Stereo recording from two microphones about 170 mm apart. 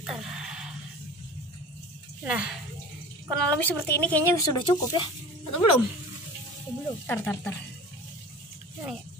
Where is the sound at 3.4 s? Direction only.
10° left (ahead or behind).